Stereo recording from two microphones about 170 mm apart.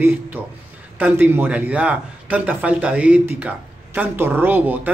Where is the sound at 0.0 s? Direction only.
10° right (ahead or behind).